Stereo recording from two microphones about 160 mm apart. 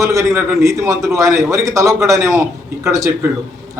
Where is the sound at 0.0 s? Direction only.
20° right (ahead or behind).